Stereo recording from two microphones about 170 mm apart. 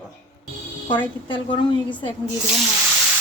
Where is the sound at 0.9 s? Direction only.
30° left (ahead or behind).